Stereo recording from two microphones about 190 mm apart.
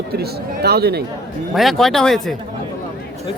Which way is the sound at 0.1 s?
55° right (ahead or behind).